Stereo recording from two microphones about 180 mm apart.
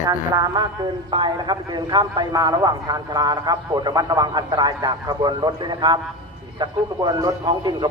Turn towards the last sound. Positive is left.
turn(degrees=-25)  # may be behind; listen again after turning